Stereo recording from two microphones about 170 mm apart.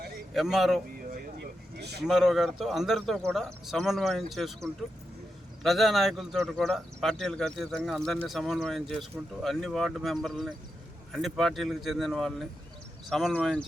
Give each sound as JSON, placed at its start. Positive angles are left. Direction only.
{"t": 0.3, "sound": "speech", "side_deg": 0}
{"t": 1.1, "sound": "a sound", "side_deg": -75}
{"t": 2.0, "sound": "speech", "side_deg": 0}